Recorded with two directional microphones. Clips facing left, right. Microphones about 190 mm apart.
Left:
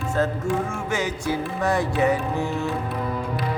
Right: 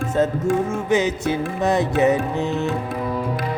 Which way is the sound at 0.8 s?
20° right (ahead or behind).